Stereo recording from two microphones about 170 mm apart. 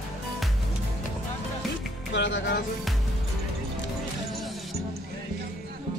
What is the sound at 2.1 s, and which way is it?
Speech, 90° left.